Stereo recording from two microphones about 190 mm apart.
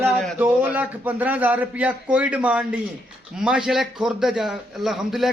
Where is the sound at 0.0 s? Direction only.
Centre (ahead or behind).